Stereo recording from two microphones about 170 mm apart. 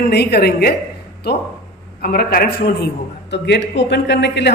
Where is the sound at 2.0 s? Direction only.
65° left (ahead or behind).